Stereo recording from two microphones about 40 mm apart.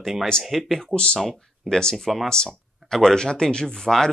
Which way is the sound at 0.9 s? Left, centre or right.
Left.